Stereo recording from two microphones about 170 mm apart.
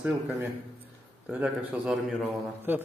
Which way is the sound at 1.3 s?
10° right (ahead or behind).